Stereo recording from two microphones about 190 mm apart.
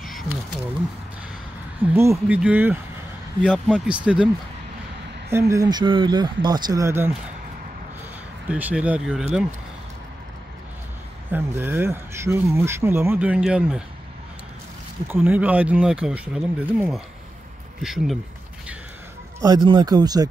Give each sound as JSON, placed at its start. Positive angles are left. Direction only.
{"t": 2.0, "sound": "speech", "side_deg": -10}
{"t": 5.3, "sound": "speech", "side_deg": -15}
{"t": 8.5, "sound": "speech", "side_deg": -5}
{"t": 11.2, "sound": "speech", "side_deg": -10}
{"t": 15.1, "sound": "speech", "side_deg": -10}
{"t": 19.4, "sound": "speech", "side_deg": -20}